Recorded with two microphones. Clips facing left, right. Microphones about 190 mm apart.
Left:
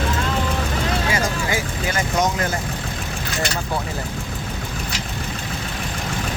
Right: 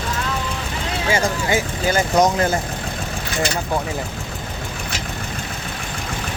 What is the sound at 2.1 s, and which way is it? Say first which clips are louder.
Speech: right 5 dB; 35° right (ahead or behind).